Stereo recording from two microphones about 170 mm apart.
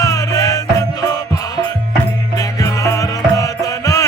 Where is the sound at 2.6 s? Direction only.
20° left (ahead or behind).